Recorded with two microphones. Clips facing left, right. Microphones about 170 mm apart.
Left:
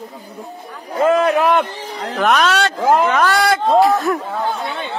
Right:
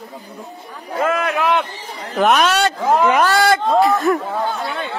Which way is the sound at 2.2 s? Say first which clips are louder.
Right 1 dB; 5° right (ahead or behind).